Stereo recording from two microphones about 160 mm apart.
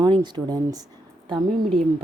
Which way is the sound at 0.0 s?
25° right (ahead or behind).